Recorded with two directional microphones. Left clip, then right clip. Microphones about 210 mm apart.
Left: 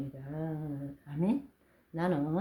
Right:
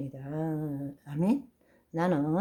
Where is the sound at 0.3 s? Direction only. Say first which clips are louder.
Right 7 dB; 40° right (ahead or behind).